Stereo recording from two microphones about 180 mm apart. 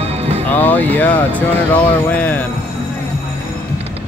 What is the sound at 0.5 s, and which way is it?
Speech, 10° left (ahead or behind).